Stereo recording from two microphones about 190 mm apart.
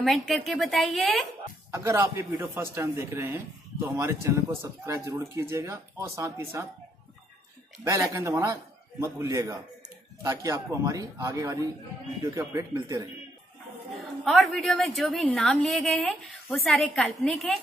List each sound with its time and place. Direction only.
0.0 s a woman's voice: centre (ahead or behind)
1.7 s a man's voice: 15° right (ahead or behind)
7.8 s a man's voice: 15° right (ahead or behind)
14.2 s a woman's voice: centre (ahead or behind)